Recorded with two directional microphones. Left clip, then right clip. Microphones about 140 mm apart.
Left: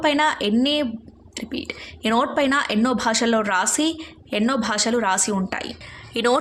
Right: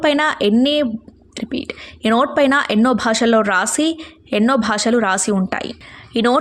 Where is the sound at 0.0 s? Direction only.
35° right (ahead or behind).